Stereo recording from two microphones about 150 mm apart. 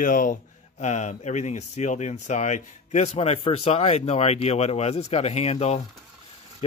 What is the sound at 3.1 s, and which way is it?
Speech, 40° left (ahead or behind).